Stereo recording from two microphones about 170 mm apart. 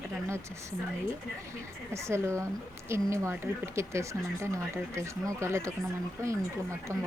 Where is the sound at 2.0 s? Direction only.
15° right (ahead or behind).